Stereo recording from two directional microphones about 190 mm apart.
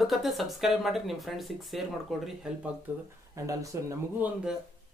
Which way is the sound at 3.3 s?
15° right (ahead or behind).